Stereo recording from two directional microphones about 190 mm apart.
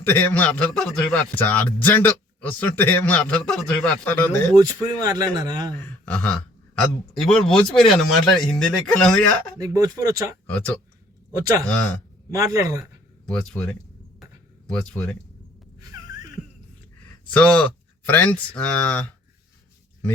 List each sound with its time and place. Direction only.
0.0 s a man's voice: 10° left (ahead or behind)
4.5 s speech: 20° right (ahead or behind)
5.7 s speech: 10° left (ahead or behind)
9.6 s speech: 15° right (ahead or behind)
10.4 s a man's voice: 10° left (ahead or behind)
12.3 s speech: 15° right (ahead or behind)
12.8 s speech: 5° left (ahead or behind)
17.3 s a man's voice: 5° left (ahead or behind)